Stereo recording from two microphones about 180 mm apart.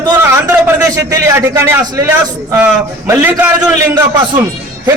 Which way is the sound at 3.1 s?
10° right (ahead or behind).